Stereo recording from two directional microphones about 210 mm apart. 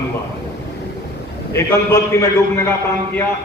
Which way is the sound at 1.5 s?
15° left (ahead or behind).